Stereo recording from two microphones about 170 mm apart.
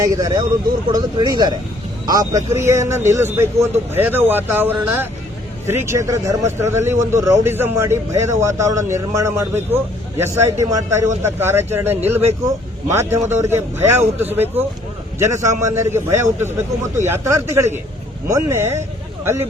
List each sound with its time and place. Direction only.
0.0 s a man's voice: 20° right (ahead or behind)